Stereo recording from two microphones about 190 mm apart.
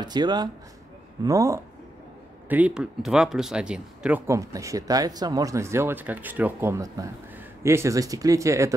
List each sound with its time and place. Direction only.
0.0 s speech: 20° right (ahead or behind)
2.5 s speech: 5° right (ahead or behind)
4.3 s speech: 15° right (ahead or behind)